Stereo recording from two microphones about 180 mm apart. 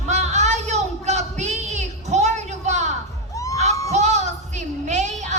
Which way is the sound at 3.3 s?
20° left (ahead or behind).